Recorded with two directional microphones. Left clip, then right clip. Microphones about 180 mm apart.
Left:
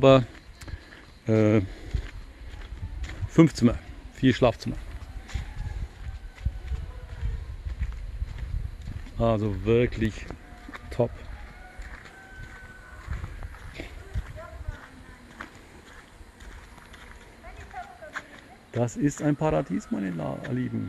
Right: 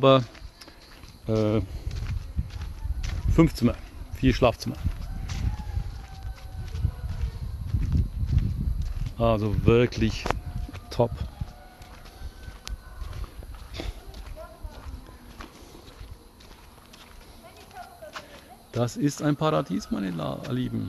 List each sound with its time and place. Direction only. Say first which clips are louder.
0.0 s speech: left 1 dB; 10° left (ahead or behind)
1.2 s speech: left 3 dB; 30° left (ahead or behind)
3.0 s a sound: left 2 dB; 15° left (ahead or behind)
9.1 s speech: right 1 dB; centre (ahead or behind)
13.8 s horse: right 3 dB; 30° right (ahead or behind)
18.7 s speech: even; centre (ahead or behind)